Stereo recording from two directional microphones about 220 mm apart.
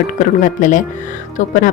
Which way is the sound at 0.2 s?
35° left (ahead or behind).